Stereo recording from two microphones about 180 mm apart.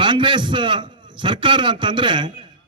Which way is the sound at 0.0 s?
25° right (ahead or behind).